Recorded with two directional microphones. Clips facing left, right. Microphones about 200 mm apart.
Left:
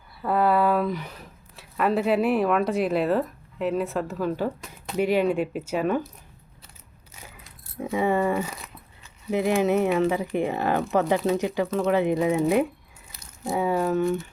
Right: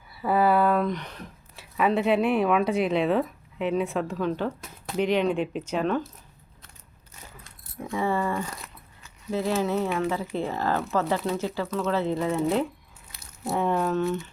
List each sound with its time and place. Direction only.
0.1 s speech: centre (ahead or behind)
7.9 s speech: 15° left (ahead or behind)
13.1 s speech: centre (ahead or behind)